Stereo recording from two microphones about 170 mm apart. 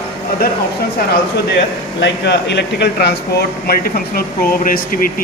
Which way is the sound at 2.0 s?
90° left.